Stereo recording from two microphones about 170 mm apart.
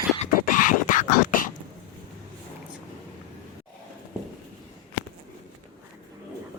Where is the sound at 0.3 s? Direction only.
55° left (ahead or behind).